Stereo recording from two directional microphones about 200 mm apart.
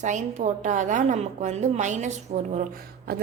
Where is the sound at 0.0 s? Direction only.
35° right (ahead or behind).